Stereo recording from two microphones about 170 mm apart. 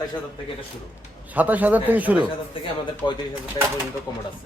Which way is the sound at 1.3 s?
10° right (ahead or behind).